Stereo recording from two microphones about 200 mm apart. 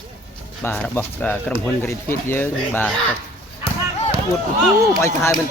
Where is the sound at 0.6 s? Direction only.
10° left (ahead or behind).